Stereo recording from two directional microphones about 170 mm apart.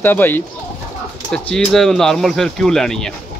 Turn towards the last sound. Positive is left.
turn(degrees=5)  # may be behind; listen again after turning